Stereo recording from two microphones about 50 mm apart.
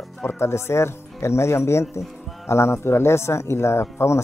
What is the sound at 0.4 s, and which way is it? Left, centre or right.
Speech, left.